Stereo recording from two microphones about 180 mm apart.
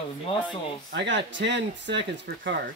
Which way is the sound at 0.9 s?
85° right.